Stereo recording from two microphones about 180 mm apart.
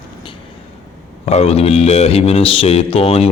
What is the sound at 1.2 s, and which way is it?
Speech, 35° left (ahead or behind).